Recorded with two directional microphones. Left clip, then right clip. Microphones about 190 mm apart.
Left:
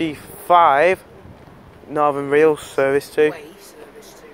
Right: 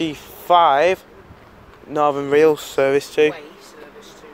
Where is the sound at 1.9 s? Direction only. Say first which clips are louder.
Even; 10° right (ahead or behind).